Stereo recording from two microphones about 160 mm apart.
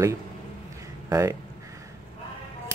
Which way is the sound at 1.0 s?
20° right (ahead or behind).